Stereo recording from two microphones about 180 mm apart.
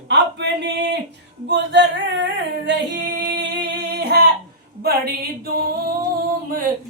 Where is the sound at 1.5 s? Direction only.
75° right (ahead or behind).